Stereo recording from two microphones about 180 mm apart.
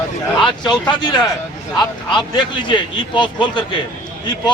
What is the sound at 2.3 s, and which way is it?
A man's voice, 25° left (ahead or behind).